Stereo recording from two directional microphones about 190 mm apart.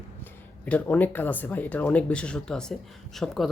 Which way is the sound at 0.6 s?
5° left (ahead or behind).